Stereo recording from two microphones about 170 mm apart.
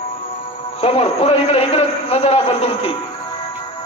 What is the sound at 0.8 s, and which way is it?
A man's voice, 35° left (ahead or behind).